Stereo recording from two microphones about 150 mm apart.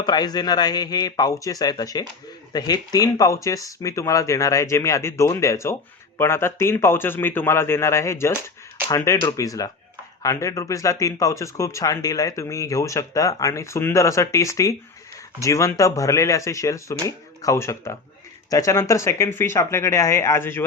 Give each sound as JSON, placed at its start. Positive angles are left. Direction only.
{"t": 0.0, "sound": "a man's voice", "side_deg": 25}